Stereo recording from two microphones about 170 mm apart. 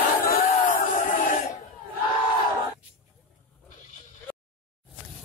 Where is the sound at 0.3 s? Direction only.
55° left (ahead or behind).